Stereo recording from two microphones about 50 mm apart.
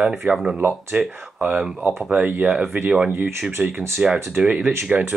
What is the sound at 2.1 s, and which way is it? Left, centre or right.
Speech, right.